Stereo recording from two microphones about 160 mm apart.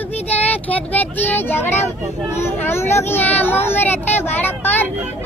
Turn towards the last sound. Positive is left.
turn(degrees=10)  # may be behind; listen again after turning